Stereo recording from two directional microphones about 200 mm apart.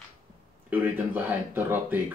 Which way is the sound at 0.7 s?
10° right (ahead or behind).